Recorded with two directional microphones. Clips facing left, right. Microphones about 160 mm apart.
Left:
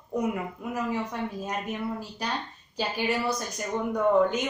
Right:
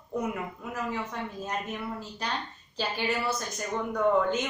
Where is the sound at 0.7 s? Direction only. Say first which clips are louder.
Left 4 dB; 15° left (ahead or behind).